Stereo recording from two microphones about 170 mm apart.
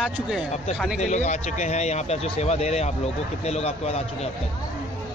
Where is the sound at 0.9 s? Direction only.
45° left (ahead or behind).